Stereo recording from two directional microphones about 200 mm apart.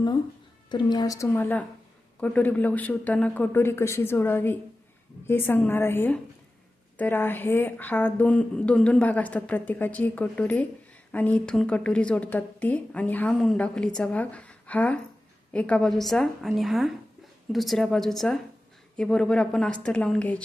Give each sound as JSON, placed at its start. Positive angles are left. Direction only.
{"t": 0.7, "sound": "a woman's voice", "side_deg": 20}